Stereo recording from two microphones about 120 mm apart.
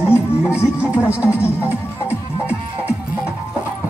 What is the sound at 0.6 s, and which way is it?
Speech, 20° left (ahead or behind).